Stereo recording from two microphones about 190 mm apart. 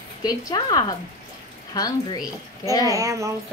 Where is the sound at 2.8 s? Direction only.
15° right (ahead or behind).